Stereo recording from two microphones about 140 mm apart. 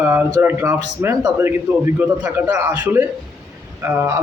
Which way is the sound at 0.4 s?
20° right (ahead or behind).